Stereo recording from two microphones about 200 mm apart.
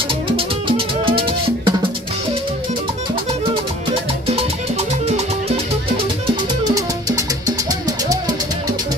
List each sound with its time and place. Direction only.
0.7 s music: 25° right (ahead or behind)
6.7 s music: 15° right (ahead or behind)